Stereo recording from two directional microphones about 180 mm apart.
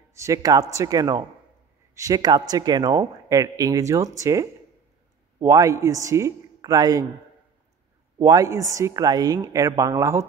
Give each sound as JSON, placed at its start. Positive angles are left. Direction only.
{"t": 0.1, "sound": "a man's voice", "side_deg": -15}
{"t": 8.2, "sound": "speech", "side_deg": -20}